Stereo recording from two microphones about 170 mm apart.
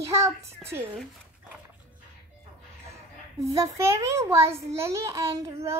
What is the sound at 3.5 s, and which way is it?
A child's voice, 15° right (ahead or behind).